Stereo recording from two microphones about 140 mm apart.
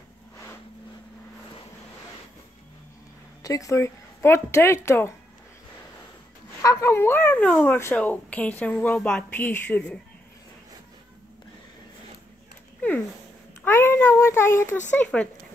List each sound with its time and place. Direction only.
3.4 s speech: 25° left (ahead or behind)
6.6 s speech: 25° left (ahead or behind)
13.7 s child singing: 15° left (ahead or behind)
14.9 s speech: 10° left (ahead or behind)